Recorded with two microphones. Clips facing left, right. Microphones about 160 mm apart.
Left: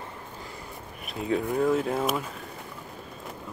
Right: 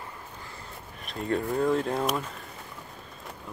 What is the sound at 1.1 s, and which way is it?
Speech, 5° left (ahead or behind).